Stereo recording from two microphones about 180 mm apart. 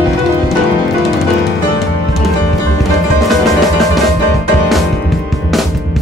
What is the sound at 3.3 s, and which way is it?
Music, centre (ahead or behind).